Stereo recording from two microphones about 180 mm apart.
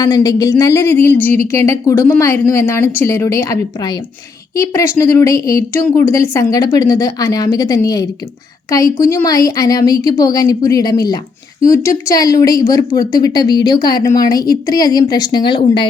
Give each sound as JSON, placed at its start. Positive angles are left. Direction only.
{"t": 0.0, "sound": "a woman's voice", "side_deg": 20}